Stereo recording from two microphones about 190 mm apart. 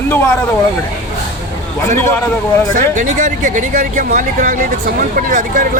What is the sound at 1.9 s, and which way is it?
Speech, 15° left (ahead or behind).